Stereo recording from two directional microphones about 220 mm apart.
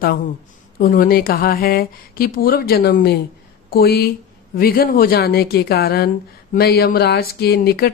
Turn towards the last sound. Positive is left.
turn(degrees=45)  # may be behind; listen again after turning